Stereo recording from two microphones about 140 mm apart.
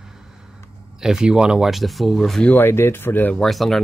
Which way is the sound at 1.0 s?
5° right (ahead or behind).